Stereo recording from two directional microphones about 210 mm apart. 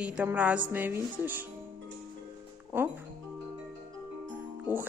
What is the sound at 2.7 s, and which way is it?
Speech, 10° right (ahead or behind).